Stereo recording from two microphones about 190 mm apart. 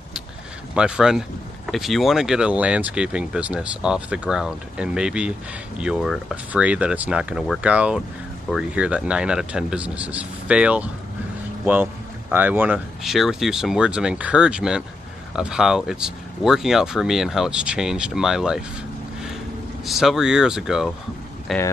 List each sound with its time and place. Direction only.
0.7 s speech: 5° right (ahead or behind)
19.8 s speech: centre (ahead or behind)